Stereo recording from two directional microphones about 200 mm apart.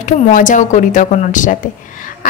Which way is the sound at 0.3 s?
40° left (ahead or behind).